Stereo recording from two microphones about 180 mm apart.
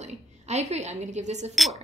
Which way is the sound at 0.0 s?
40° right (ahead or behind).